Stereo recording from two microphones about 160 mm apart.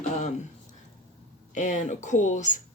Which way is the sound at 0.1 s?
45° left (ahead or behind).